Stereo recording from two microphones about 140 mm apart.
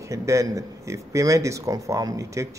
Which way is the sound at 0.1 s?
20° right (ahead or behind).